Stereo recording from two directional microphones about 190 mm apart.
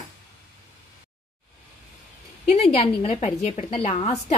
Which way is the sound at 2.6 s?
35° left (ahead or behind).